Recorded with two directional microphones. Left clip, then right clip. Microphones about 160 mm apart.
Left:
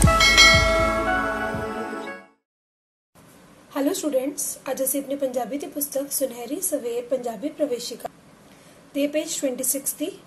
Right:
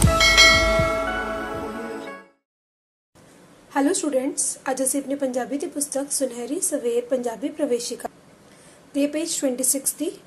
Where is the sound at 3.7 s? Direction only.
30° right (ahead or behind).